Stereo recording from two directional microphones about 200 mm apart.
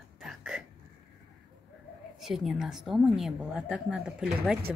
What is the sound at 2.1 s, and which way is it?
A woman's voice, centre (ahead or behind).